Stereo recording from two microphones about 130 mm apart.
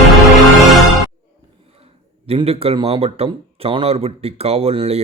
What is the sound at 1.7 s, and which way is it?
Speech, 50° right (ahead or behind).